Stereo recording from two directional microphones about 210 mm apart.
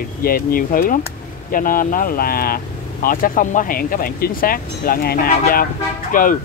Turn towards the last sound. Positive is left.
turn(degrees=40)  # may be behind; listen again after turning